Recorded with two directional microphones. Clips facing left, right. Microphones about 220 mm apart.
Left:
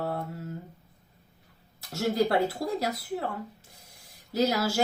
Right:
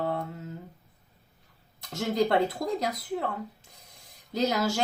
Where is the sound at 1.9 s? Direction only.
5° left (ahead or behind).